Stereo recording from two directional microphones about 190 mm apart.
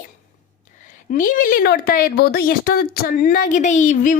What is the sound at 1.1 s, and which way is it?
A woman's voice, 45° left (ahead or behind).